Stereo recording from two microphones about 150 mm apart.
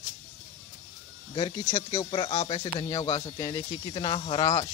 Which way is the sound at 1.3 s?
30° left (ahead or behind).